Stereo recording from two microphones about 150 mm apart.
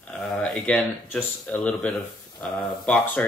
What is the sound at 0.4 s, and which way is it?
Speech, 10° left (ahead or behind).